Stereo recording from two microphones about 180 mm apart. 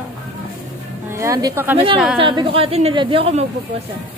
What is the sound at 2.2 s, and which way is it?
Speech, 30° right (ahead or behind).